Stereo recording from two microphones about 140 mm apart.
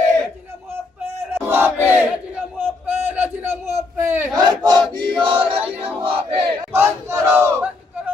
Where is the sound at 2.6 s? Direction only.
15° right (ahead or behind).